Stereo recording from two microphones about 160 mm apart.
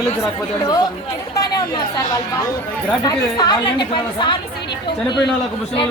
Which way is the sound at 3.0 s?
25° left (ahead or behind).